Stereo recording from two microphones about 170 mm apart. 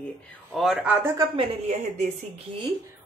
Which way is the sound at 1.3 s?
40° right (ahead or behind).